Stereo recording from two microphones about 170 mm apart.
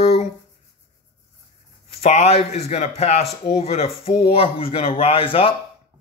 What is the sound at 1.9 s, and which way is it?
Speech, 40° left (ahead or behind).